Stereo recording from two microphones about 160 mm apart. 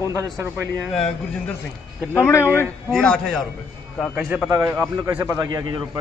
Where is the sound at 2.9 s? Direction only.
5° left (ahead or behind).